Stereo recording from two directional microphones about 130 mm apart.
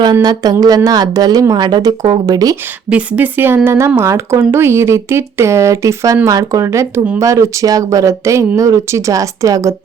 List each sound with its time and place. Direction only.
0.0 s speech: 30° right (ahead or behind)
2.9 s speech: 15° right (ahead or behind)